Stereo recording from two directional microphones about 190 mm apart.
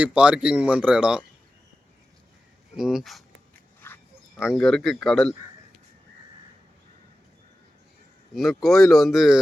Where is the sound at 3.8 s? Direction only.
10° left (ahead or behind).